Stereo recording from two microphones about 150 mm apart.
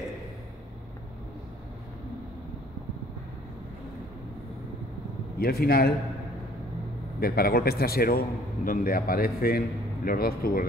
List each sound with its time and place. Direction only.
5.4 s a man's voice: 90° left
7.2 s a man's voice: 90° left